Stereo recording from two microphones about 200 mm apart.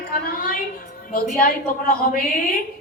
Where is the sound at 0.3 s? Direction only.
45° left (ahead or behind).